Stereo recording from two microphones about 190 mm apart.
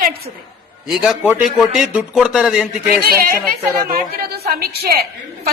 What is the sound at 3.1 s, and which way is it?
A woman's voice, 50° right (ahead or behind).